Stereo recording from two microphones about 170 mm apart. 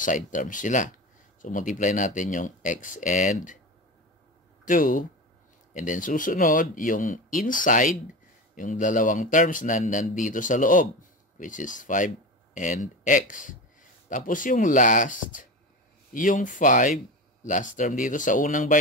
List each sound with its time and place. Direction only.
0.0 s a man's voice: 50° left (ahead or behind)
4.6 s a man's voice: 50° left (ahead or behind)